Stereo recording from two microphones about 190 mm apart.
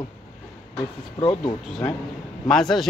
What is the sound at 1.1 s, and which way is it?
Speech, 25° left (ahead or behind).